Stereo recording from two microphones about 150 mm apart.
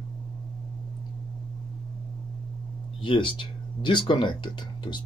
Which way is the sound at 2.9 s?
35° left (ahead or behind).